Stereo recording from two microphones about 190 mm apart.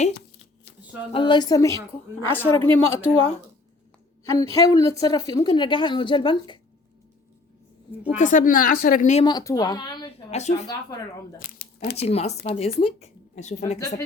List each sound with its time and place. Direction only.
0.1 s a sound: 65° left (ahead or behind)
1.1 s a woman's voice: 25° left (ahead or behind)
4.2 s a woman's voice: 15° left (ahead or behind)
8.0 s speech: 40° left (ahead or behind)
9.2 s a woman's voice: 20° left (ahead or behind)
10.3 s speech: 35° left (ahead or behind)
11.3 s speech: 50° left (ahead or behind)
12.0 s speech: 35° left (ahead or behind)